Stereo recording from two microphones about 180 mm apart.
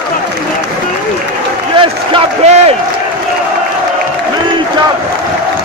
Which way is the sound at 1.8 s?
35° right (ahead or behind).